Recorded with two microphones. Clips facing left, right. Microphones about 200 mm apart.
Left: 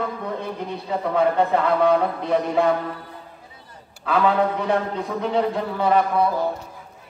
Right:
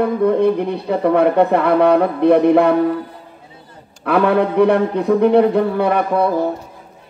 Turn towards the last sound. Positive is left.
turn(degrees=-60)  # may be behind; listen again after turning